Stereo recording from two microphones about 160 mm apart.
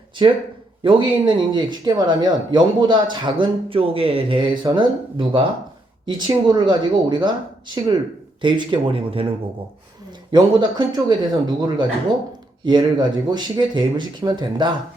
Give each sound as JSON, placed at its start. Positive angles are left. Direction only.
{"t": 0.8, "sound": "speech", "side_deg": -30}
{"t": 8.4, "sound": "speech", "side_deg": -30}
{"t": 10.3, "sound": "speech", "side_deg": -25}